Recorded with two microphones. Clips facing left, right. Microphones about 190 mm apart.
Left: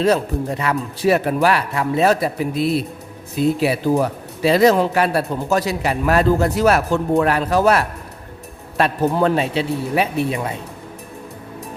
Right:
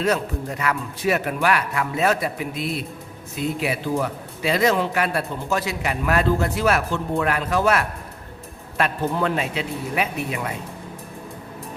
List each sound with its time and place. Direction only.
0.0 s a man's voice: 30° left (ahead or behind)